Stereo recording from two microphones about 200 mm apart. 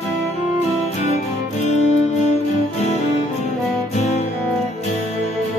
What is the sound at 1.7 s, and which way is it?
Music, 35° left (ahead or behind).